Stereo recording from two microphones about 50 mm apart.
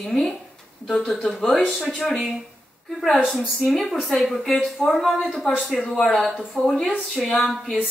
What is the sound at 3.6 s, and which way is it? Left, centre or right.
A woman's voice, centre.